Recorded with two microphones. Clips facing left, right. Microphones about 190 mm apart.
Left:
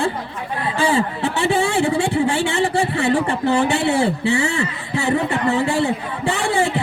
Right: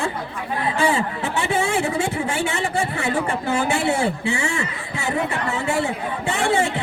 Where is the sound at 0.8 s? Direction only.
30° left (ahead or behind).